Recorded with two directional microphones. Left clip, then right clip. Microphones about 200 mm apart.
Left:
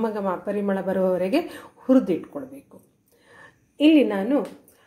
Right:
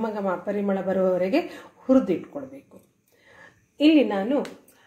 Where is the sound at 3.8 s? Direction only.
10° left (ahead or behind).